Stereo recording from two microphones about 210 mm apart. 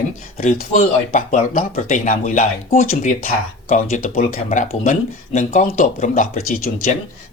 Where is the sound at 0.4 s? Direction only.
40° left (ahead or behind).